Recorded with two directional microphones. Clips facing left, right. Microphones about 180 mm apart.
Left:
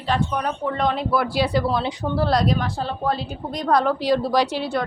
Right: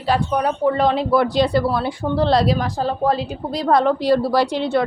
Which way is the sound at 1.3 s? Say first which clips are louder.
Right 4 dB; 10° left (ahead or behind).